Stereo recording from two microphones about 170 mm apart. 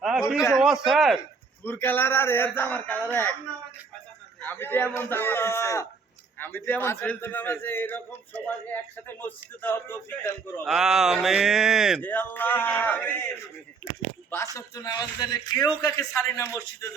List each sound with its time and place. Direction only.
0.0 s a sound: 5° right (ahead or behind)
0.5 s speech: centre (ahead or behind)
1.6 s a man's voice: 10° left (ahead or behind)
4.4 s a man's voice: 10° left (ahead or behind)
10.7 s speech: centre (ahead or behind)
11.9 s a man's voice: 10° left (ahead or behind)
14.5 s speech: 20° left (ahead or behind)